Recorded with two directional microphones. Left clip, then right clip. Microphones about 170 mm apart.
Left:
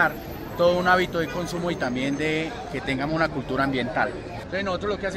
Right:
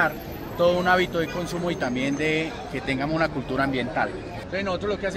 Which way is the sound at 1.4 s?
10° right (ahead or behind).